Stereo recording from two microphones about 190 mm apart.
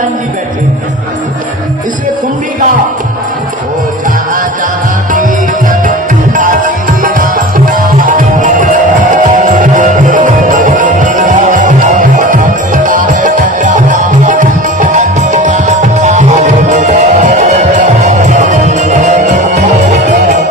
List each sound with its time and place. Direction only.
6.3 s music: 45° right (ahead or behind)